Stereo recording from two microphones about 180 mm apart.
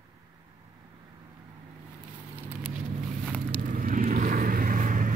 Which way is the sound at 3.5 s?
50° right (ahead or behind).